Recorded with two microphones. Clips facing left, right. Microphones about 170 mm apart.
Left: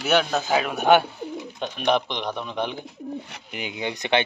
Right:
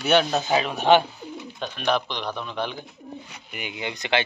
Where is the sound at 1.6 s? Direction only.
20° left (ahead or behind).